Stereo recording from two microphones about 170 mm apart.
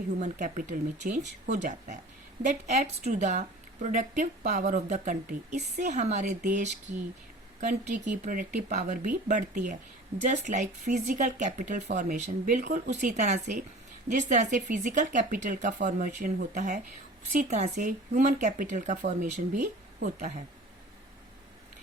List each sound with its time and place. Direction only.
0.2 s speech: 50° right (ahead or behind)